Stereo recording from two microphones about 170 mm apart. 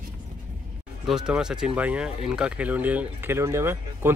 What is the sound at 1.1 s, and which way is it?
Speech, 5° right (ahead or behind).